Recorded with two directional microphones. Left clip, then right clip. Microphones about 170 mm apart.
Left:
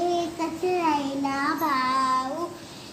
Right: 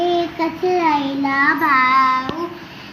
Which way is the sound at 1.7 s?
20° left (ahead or behind).